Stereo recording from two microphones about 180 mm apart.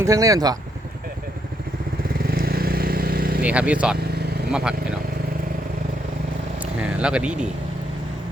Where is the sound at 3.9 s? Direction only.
60° right (ahead or behind).